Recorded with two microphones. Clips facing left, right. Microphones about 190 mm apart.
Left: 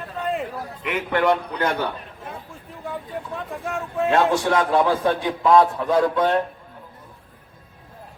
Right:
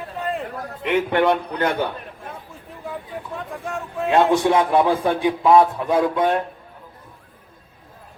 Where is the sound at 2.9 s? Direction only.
Centre (ahead or behind).